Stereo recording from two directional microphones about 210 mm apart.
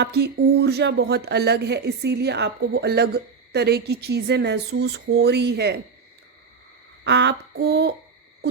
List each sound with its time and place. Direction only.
0.0 s speech: 50° right (ahead or behind)
7.0 s speech: 55° right (ahead or behind)